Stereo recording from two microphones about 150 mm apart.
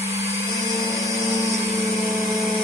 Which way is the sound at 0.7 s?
20° left (ahead or behind).